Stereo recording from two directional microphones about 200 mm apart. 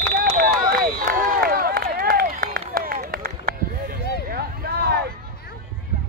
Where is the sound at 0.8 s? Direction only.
45° right (ahead or behind).